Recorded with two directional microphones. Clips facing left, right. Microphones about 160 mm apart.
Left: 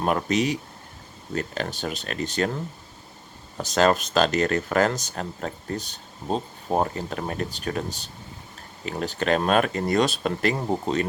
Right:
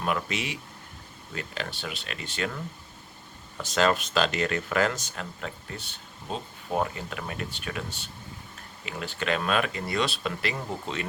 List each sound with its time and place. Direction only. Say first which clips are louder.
0.0 s speech: left 7 dB; 40° left (ahead or behind)
3.6 s speech: left 4 dB; 40° left (ahead or behind)